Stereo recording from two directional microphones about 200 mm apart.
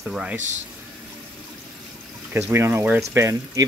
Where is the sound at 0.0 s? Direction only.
5° right (ahead or behind).